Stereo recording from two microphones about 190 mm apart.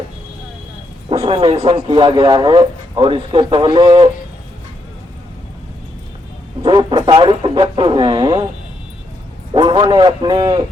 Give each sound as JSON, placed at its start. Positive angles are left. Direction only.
{"t": 1.1, "sound": "speech", "side_deg": -25}
{"t": 6.6, "sound": "a sound", "side_deg": -25}
{"t": 9.5, "sound": "a man's voice", "side_deg": -25}